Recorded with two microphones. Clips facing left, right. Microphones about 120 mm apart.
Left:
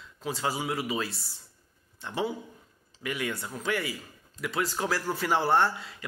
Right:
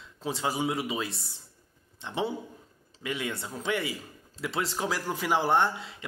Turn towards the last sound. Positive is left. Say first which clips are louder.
# even
turn(degrees=-25)  # may be behind; listen again after turning